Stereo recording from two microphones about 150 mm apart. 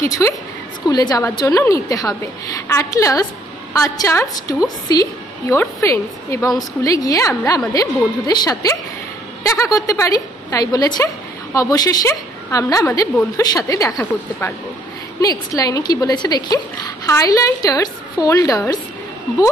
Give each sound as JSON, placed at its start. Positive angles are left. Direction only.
{"t": 0.0, "sound": "a woman's voice", "side_deg": 20}